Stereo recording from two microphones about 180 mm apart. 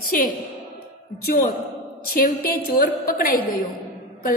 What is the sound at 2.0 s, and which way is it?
A woman's voice, 55° left (ahead or behind).